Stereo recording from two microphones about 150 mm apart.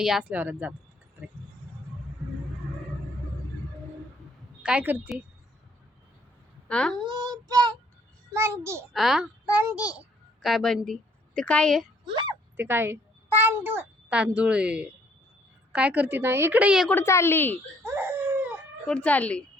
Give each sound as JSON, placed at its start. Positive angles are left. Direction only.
{"t": 0.0, "sound": "a woman's voice", "side_deg": -5}
{"t": 4.6, "sound": "a woman's voice", "side_deg": -10}
{"t": 6.7, "sound": "a child's voice", "side_deg": 5}
{"t": 7.1, "sound": "child singing", "side_deg": -30}
{"t": 8.3, "sound": "a woman's voice", "side_deg": -20}
{"t": 8.9, "sound": "a child's voice", "side_deg": 0}
{"t": 12.5, "sound": "a woman's voice", "side_deg": -15}
{"t": 16.9, "sound": "a woman's voice", "side_deg": 15}
{"t": 17.8, "sound": "a sound", "side_deg": -15}
{"t": 18.9, "sound": "a woman's voice", "side_deg": 10}